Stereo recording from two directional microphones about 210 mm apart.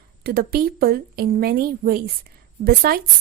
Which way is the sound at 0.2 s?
45° right (ahead or behind).